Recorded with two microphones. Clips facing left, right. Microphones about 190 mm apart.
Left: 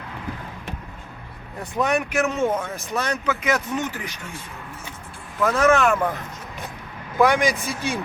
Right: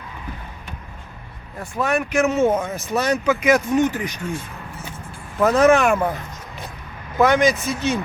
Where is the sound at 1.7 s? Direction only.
20° left (ahead or behind).